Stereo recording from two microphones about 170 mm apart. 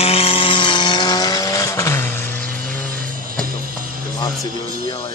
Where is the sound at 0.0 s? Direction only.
35° left (ahead or behind); by 2.0 s 15° left (ahead or behind).